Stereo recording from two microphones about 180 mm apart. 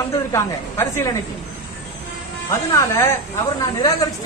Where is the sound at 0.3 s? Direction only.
15° left (ahead or behind).